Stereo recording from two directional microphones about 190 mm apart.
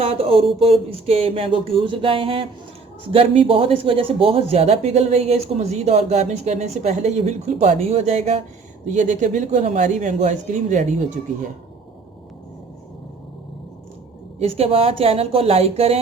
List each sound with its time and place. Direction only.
0.0 s a sound: 30° right (ahead or behind)
3.1 s speech: 30° right (ahead or behind)
14.3 s speech: 30° right (ahead or behind)